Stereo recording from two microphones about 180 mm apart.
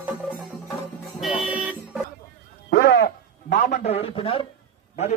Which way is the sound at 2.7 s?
65° left (ahead or behind).